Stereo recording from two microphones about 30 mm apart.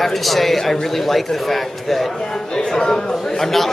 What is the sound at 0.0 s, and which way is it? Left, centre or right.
A man's voice, centre.